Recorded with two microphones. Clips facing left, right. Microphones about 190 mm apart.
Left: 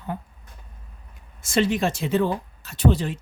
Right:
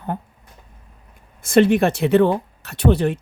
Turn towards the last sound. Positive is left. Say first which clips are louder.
# right 4 dB
turn(degrees=-60)  # may be behind; listen again after turning